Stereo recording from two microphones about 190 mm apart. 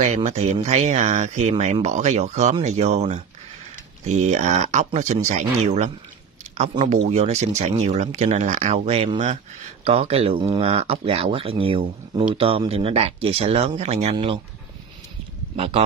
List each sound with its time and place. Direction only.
0.0 s speech: 35° right (ahead or behind)
15.5 s speech: 30° right (ahead or behind)